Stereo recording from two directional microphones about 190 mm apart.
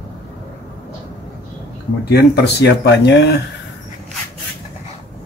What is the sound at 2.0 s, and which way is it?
Speech, 60° left (ahead or behind).